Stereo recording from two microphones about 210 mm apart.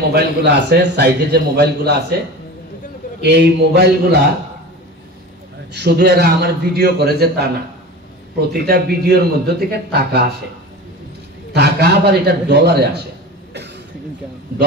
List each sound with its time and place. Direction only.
0.1 s a man's voice: 50° right (ahead or behind)
3.2 s a man's voice: 50° right (ahead or behind)
5.7 s a man's voice: 50° right (ahead or behind)
11.5 s a man's voice: 50° right (ahead or behind)